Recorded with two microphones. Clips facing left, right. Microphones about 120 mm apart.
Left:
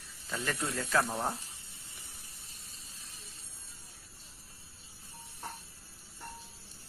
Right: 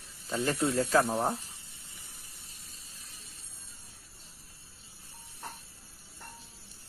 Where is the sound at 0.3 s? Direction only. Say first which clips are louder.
Right 6 dB; 30° right (ahead or behind).